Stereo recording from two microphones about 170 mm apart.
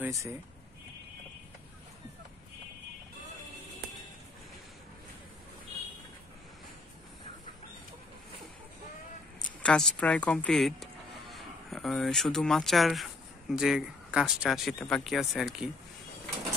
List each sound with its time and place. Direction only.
0.0 s speech: 20° right (ahead or behind)
9.6 s speech: 5° left (ahead or behind)